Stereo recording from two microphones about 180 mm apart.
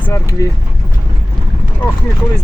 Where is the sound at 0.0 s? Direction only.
15° left (ahead or behind).